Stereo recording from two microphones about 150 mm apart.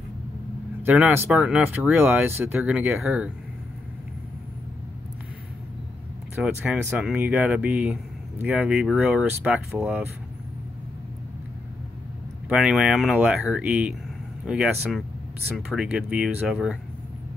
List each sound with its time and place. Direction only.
0.8 s speech: 10° right (ahead or behind)
6.4 s speech: 10° right (ahead or behind)
12.4 s speech: 5° right (ahead or behind)